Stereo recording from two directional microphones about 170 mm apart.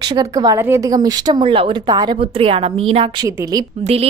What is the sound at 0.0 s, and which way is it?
A woman's voice, 20° right (ahead or behind).